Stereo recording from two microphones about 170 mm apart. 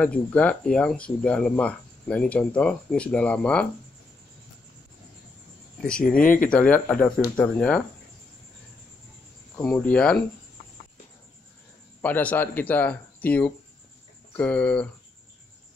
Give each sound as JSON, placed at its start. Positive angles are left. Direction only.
{"t": 0.0, "sound": "speech", "side_deg": 5}
{"t": 5.8, "sound": "speech", "side_deg": 5}
{"t": 6.1, "sound": "speech", "side_deg": 55}
{"t": 6.5, "sound": "speech", "side_deg": 5}
{"t": 9.6, "sound": "speech", "side_deg": 10}
{"t": 12.0, "sound": "speech", "side_deg": 10}